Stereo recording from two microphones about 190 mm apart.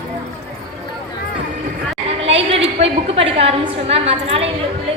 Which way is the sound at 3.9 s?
30° right (ahead or behind).